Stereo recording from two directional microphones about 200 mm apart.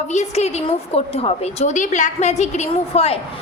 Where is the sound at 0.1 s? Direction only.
35° left (ahead or behind).